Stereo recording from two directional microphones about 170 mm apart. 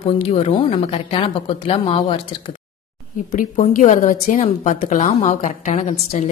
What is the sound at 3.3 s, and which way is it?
A woman's voice, 50° left (ahead or behind).